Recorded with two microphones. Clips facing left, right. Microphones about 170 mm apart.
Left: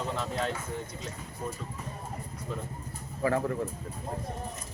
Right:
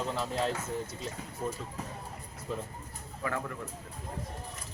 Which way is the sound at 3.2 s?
35° left (ahead or behind).